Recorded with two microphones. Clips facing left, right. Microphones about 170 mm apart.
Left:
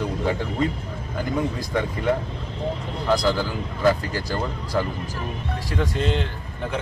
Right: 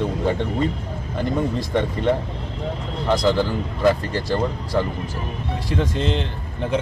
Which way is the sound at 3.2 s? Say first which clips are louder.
Right 7 dB; 20° right (ahead or behind).